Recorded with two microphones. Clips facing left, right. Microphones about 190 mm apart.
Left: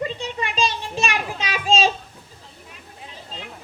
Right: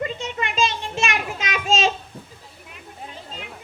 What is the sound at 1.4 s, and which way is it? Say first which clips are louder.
Child singing: left 2 dB; 35° left (ahead or behind).